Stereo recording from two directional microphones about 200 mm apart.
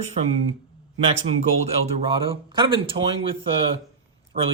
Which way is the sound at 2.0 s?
25° right (ahead or behind).